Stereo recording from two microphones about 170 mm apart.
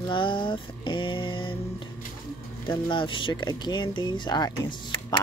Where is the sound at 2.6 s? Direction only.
30° left (ahead or behind).